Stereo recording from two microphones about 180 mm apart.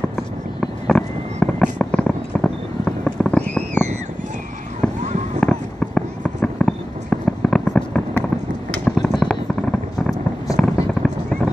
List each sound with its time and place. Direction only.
0.1 s fireworks: centre (ahead or behind)
5.0 s fireworks: 40° right (ahead or behind)
5.4 s fireworks: 5° left (ahead or behind)
8.9 s a sound: centre (ahead or behind)